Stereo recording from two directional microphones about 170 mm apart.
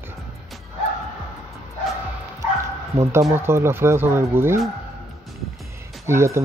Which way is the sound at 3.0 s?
15° right (ahead or behind).